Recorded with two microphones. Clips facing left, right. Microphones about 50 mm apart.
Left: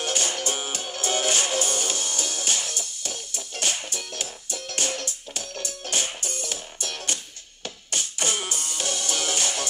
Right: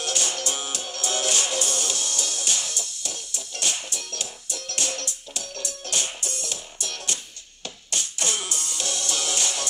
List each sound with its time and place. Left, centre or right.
0.0 s music: left